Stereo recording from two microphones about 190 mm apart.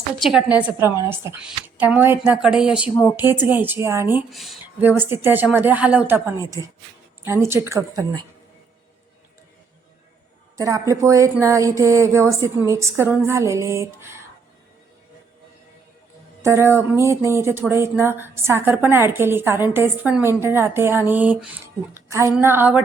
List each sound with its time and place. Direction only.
0.2 s speech: centre (ahead or behind)
0.6 s speech: 15° right (ahead or behind)
2.9 s speech: 10° left (ahead or behind)
3.2 s speech: 10° right (ahead or behind)
4.3 s speech: centre (ahead or behind); by 8.2 s 15° right (ahead or behind)
10.6 s speech: 15° right (ahead or behind)
16.4 s speech: 15° right (ahead or behind)